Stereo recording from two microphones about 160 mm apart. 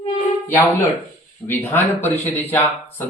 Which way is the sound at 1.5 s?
15° left (ahead or behind).